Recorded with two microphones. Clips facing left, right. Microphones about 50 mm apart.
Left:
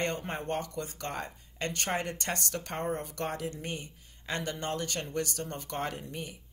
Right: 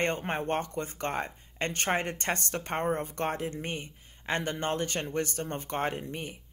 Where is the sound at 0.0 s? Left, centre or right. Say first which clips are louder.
Right 3 dB; right.